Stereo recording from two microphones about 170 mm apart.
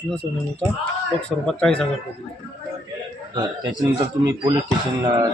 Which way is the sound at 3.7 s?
25° right (ahead or behind).